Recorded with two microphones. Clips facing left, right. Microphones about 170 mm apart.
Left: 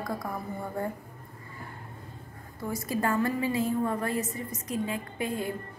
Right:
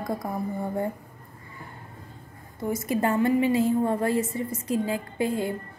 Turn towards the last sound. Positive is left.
turn(degrees=-30)  # may be behind; listen again after turning